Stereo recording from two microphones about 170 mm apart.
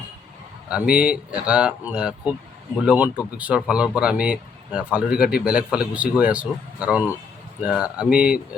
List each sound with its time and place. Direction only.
0.7 s speech: 5° right (ahead or behind)